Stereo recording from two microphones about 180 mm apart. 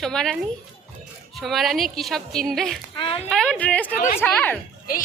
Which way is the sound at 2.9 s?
30° left (ahead or behind).